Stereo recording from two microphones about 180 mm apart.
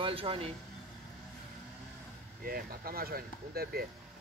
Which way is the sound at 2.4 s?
55° right (ahead or behind).